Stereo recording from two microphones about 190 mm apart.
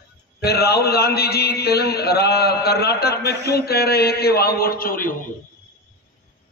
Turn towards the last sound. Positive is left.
turn(degrees=50)  # may be behind; listen again after turning